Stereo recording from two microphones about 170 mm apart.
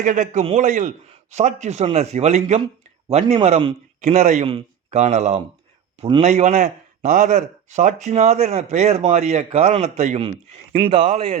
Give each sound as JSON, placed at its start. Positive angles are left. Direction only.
{"t": 0.0, "sound": "a man's voice", "side_deg": -50}
{"t": 6.0, "sound": "speech", "side_deg": -30}
{"t": 6.2, "sound": "a man's voice", "side_deg": -45}